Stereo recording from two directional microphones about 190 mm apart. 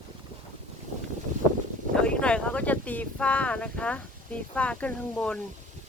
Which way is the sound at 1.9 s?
5° left (ahead or behind).